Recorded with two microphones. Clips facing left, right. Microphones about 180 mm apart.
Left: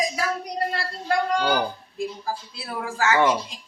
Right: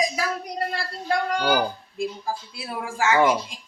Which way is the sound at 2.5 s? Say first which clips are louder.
Even; 15° right (ahead or behind).